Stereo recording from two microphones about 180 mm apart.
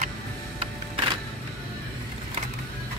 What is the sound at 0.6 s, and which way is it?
Music, 30° right (ahead or behind).